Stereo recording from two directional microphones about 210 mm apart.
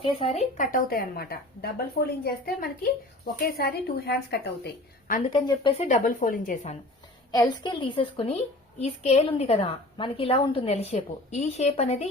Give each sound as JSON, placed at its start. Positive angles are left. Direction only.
{"t": 0.0, "sound": "a woman's voice", "side_deg": 25}
{"t": 5.3, "sound": "speech", "side_deg": 20}
{"t": 7.3, "sound": "a woman's voice", "side_deg": 15}